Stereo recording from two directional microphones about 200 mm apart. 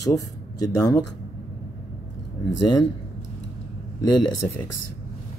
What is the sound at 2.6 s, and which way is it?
Speech, 20° left (ahead or behind).